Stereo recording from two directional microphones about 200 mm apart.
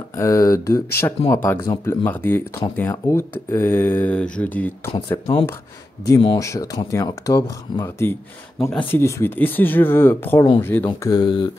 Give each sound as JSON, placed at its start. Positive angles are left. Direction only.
{"t": 0.1, "sound": "speech", "side_deg": 15}